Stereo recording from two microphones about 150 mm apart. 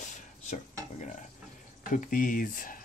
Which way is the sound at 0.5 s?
55° left (ahead or behind).